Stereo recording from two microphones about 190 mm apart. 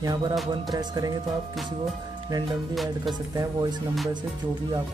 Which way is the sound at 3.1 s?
20° right (ahead or behind).